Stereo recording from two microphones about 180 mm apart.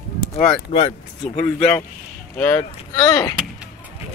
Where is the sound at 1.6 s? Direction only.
10° left (ahead or behind).